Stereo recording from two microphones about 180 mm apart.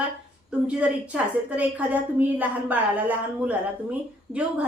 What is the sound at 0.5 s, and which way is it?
A woman's voice, 5° right (ahead or behind).